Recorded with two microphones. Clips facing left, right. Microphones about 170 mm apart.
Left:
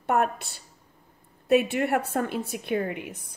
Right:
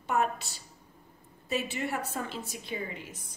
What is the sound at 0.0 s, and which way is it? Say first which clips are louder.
A woman's voice: left 5 dB; 55° left (ahead or behind).